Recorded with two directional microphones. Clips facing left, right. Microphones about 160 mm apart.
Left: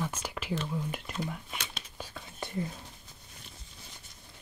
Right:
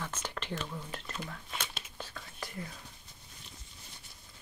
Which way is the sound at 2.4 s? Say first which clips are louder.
Left 5 dB; 25° left (ahead or behind).